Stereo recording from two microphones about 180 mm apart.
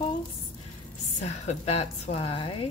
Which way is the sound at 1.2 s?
35° left (ahead or behind).